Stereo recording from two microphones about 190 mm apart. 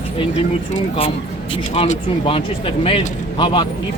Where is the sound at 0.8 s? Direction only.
30° left (ahead or behind).